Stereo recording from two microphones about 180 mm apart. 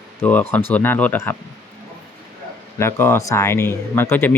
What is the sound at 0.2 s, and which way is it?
Speech, 10° left (ahead or behind).